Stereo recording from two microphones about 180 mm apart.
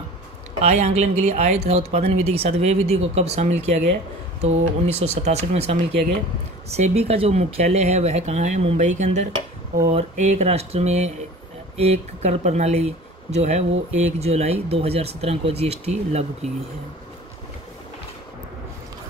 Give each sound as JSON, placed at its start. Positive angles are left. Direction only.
{"t": 0.6, "sound": "speech", "side_deg": -40}